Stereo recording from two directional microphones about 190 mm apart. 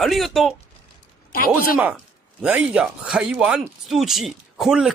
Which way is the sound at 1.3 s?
50° left (ahead or behind).